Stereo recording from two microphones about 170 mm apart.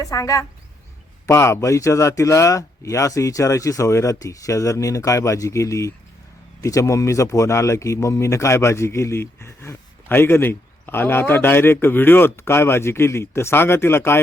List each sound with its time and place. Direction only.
0.0 s speech: 20° left (ahead or behind)